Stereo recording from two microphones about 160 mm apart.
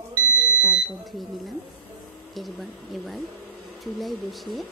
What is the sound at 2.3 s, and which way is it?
Speech, centre (ahead or behind).